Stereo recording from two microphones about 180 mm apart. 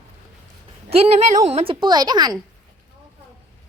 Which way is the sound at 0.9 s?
35° right (ahead or behind).